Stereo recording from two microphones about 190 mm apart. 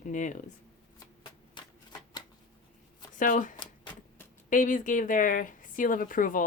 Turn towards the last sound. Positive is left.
turn(degrees=45)  # may be behind; listen again after turning